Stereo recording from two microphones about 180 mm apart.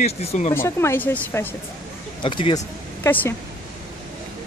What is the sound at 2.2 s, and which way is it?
Speech, 25° left (ahead or behind).